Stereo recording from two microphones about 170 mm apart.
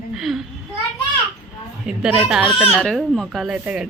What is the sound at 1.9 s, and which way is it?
Speech, 5° right (ahead or behind).